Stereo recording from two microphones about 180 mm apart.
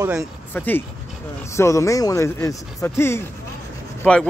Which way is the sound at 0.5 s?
10° left (ahead or behind).